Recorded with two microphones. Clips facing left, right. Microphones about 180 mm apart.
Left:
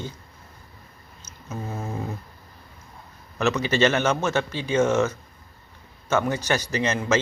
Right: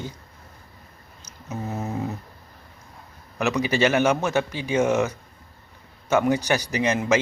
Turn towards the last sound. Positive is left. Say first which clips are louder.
# right 2 dB
turn(degrees=-15)  # may be behind; listen again after turning